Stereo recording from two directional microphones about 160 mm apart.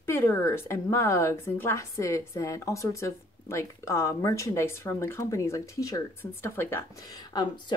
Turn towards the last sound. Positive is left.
turn(degrees=25)  # may be behind; listen again after turning